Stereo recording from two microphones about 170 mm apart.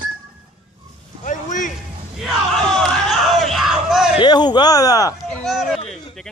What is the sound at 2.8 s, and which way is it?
Crowd, centre (ahead or behind).